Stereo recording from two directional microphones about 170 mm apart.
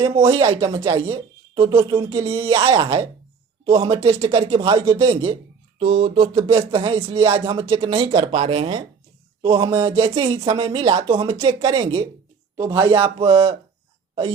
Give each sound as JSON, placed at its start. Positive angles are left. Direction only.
{"t": 0.0, "sound": "speech", "side_deg": -30}
{"t": 4.0, "sound": "speech", "side_deg": -35}
{"t": 6.5, "sound": "speech", "side_deg": -15}
{"t": 6.7, "sound": "speech", "side_deg": -35}
{"t": 9.7, "sound": "speech", "side_deg": -15}
{"t": 10.0, "sound": "speech", "side_deg": -30}
{"t": 12.5, "sound": "speech", "side_deg": -25}